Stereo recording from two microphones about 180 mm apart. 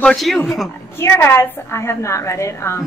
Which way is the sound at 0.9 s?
15° left (ahead or behind).